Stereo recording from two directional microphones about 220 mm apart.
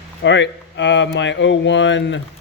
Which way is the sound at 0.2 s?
55° left (ahead or behind).